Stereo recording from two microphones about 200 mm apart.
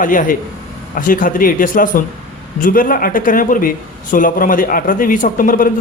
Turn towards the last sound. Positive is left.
turn(degrees=45)  # may be behind; listen again after turning